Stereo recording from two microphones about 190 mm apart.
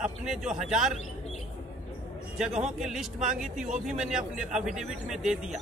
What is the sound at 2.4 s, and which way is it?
Speech, 5° right (ahead or behind).